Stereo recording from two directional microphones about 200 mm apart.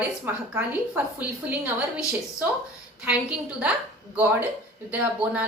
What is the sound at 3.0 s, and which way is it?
A woman's voice, 5° right (ahead or behind).